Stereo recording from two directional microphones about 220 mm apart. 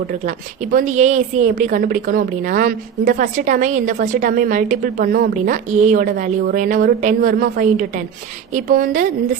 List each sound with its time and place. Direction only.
0.1 s a woman's voice: 40° right (ahead or behind)